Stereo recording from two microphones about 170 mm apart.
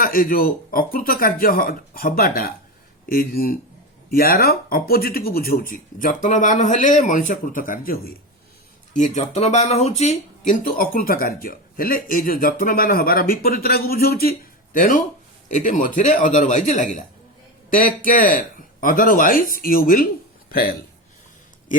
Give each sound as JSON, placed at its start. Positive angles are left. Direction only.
{"t": 0.0, "sound": "speech", "side_deg": 55}
{"t": 8.9, "sound": "a man's voice", "side_deg": 45}